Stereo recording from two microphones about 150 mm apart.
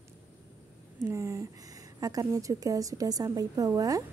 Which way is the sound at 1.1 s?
20° right (ahead or behind).